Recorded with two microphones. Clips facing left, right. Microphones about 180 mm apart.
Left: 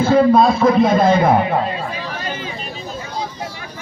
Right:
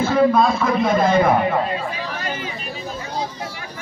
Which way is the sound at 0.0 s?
30° left (ahead or behind).